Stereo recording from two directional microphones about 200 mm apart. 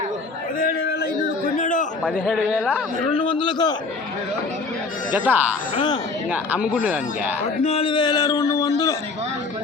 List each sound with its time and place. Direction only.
0.6 s a sound: 50° left (ahead or behind)
1.5 s a sound: 40° left (ahead or behind)
2.0 s a man's voice: 5° left (ahead or behind)
3.2 s a man's voice: 25° left (ahead or behind)
5.1 s speech: 10° right (ahead or behind)
5.7 s a man's voice: 20° left (ahead or behind)
6.3 s speech: 5° right (ahead or behind)
7.6 s a man's voice: 30° left (ahead or behind)